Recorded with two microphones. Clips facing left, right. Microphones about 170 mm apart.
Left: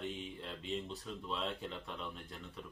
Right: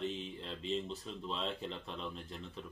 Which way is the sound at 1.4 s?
30° right (ahead or behind).